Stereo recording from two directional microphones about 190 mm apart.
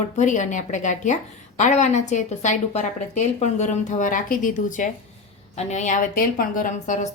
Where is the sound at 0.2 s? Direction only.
40° left (ahead or behind).